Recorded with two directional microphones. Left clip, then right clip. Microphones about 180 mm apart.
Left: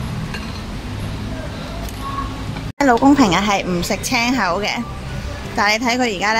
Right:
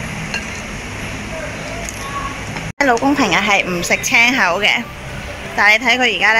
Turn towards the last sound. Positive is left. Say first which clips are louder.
# right 5 dB
turn(degrees=10)  # may be behind; listen again after turning